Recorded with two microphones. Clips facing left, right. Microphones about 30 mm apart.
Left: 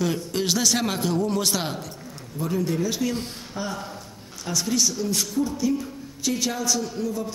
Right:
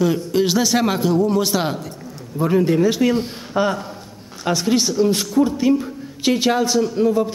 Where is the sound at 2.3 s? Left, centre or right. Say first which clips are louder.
Right 9 dB; right.